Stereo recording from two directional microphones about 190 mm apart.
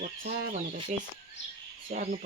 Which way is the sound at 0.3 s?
35° right (ahead or behind).